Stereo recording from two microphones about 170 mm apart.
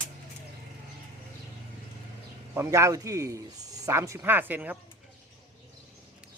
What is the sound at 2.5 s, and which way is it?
A man's voice, 15° right (ahead or behind).